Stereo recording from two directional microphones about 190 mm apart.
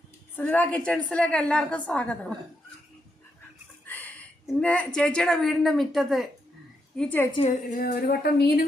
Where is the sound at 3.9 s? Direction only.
10° left (ahead or behind).